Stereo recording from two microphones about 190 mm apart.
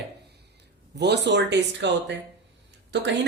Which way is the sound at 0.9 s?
60° right (ahead or behind).